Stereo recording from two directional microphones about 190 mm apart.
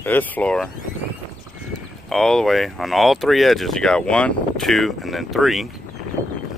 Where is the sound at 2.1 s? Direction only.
5° left (ahead or behind).